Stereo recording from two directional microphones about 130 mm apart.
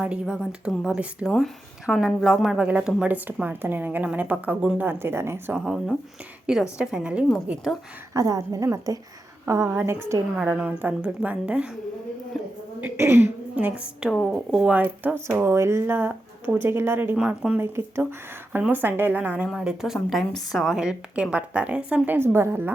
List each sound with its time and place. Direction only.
0.0 s a woman's voice: 5° right (ahead or behind)
8.1 s a woman's voice: 25° right (ahead or behind)
10.3 s a woman's voice: 5° right (ahead or behind)
12.8 s a woman's voice: 15° right (ahead or behind)
14.1 s a woman's voice: centre (ahead or behind); by 22.7 s 20° right (ahead or behind)